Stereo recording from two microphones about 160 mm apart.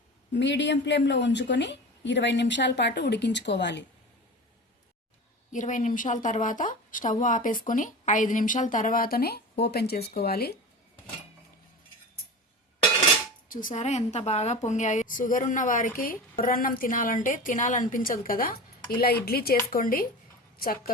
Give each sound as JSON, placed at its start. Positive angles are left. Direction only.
{"t": 0.3, "sound": "a woman's voice", "side_deg": 90}
{"t": 5.5, "sound": "speech", "side_deg": 55}
{"t": 13.5, "sound": "a woman's voice", "side_deg": 55}
{"t": 19.7, "sound": "speech", "side_deg": 65}